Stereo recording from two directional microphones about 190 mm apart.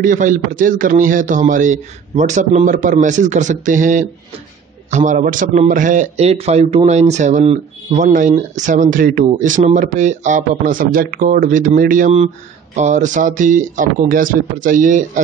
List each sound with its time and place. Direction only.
0.0 s a man's voice: 45° right (ahead or behind)